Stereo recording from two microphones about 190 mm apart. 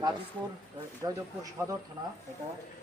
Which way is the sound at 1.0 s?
20° right (ahead or behind).